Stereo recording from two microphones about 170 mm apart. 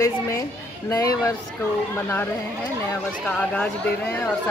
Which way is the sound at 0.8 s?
20° left (ahead or behind).